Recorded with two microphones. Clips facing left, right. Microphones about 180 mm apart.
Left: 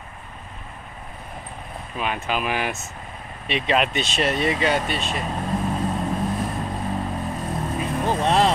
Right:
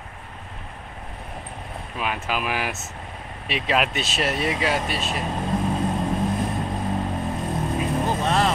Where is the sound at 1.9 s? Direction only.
5° right (ahead or behind).